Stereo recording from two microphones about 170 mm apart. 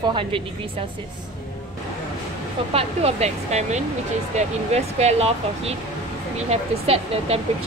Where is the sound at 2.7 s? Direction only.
35° right (ahead or behind).